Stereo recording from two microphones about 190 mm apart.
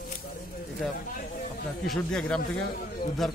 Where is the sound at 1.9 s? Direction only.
5° left (ahead or behind).